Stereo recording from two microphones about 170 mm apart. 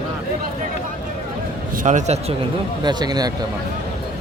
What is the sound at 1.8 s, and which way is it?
Speech, 45° right (ahead or behind).